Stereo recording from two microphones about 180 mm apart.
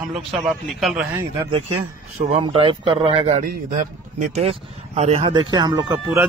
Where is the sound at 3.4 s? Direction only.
45° right (ahead or behind); by 5.9 s 25° right (ahead or behind).